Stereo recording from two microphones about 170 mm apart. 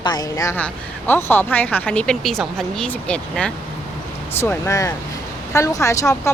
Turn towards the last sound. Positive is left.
turn(degrees=20)  # may be behind; listen again after turning